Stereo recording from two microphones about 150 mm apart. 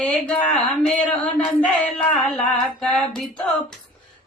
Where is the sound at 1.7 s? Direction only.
5° left (ahead or behind).